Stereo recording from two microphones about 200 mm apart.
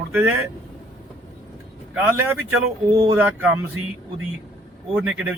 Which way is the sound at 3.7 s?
85° right.